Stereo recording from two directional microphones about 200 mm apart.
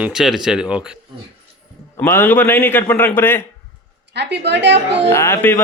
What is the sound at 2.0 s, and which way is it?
Speech, 10° left (ahead or behind).